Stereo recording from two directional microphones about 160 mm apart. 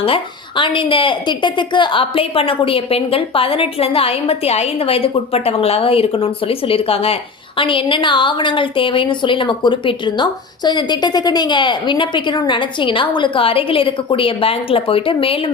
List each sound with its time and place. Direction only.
0.0 s a woman's voice: 35° left (ahead or behind)